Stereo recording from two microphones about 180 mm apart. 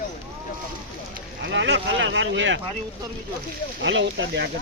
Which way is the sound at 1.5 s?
85° right.